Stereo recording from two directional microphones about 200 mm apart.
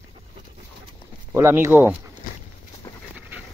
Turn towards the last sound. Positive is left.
turn(degrees=15)  # may be behind; listen again after turning